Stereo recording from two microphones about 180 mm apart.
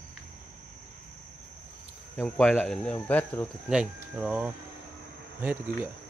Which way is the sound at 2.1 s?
10° left (ahead or behind).